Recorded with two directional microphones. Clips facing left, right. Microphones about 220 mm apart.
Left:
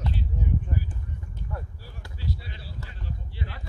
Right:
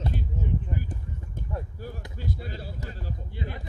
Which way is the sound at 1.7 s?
50° right (ahead or behind).